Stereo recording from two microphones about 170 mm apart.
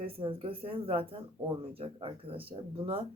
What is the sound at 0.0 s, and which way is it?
Speech, 30° right (ahead or behind).